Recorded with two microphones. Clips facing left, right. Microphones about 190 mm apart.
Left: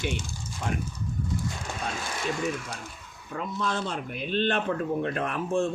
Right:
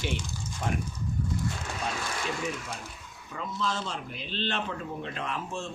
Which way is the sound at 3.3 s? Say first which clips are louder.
Left 3 dB; 55° left (ahead or behind).